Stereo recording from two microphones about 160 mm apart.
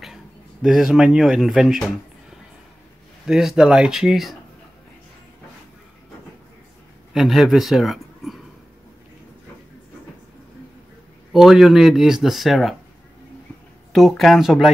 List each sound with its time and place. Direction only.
0.0 s speech: centre (ahead or behind)
3.3 s speech: 5° right (ahead or behind)
7.2 s speech: centre (ahead or behind)
11.3 s speech: centre (ahead or behind)
13.9 s speech: centre (ahead or behind)